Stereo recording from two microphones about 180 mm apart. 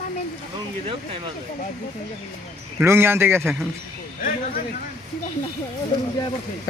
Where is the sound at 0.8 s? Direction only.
30° right (ahead or behind).